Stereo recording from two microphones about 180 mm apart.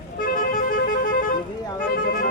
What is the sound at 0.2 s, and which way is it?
Vehicle, 50° left (ahead or behind).